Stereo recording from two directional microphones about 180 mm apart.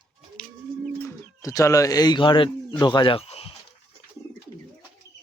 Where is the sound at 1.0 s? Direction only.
20° left (ahead or behind).